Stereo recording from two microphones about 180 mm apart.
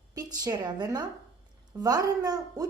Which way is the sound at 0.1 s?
20° right (ahead or behind).